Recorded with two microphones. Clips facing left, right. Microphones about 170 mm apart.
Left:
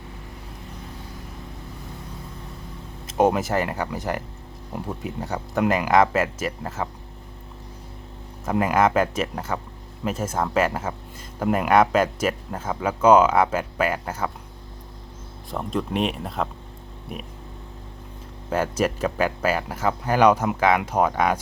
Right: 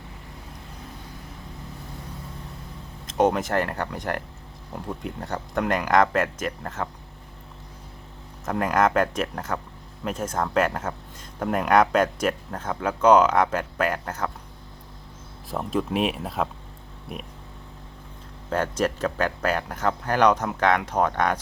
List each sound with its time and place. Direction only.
3.1 s speech: 10° left (ahead or behind)
8.4 s speech: 5° left (ahead or behind)
15.4 s speech: 5° right (ahead or behind)
18.5 s speech: 10° left (ahead or behind)